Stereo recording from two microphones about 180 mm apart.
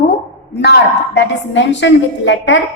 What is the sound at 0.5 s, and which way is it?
A woman's voice, 70° left (ahead or behind).